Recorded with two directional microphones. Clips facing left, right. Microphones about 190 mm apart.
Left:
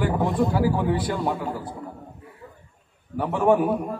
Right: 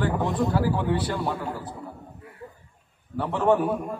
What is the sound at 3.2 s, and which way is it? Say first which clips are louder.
Speech: left 2 dB; 10° left (ahead or behind).